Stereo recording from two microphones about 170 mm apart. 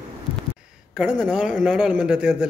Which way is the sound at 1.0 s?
5° right (ahead or behind).